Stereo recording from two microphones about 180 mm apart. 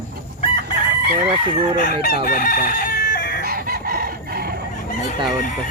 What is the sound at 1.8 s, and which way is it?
Speech, 40° right (ahead or behind).